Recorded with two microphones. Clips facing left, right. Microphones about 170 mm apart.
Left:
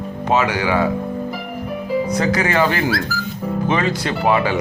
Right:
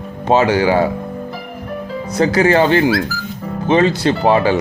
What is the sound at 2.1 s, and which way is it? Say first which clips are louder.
Speech: right 8 dB; 30° right (ahead or behind).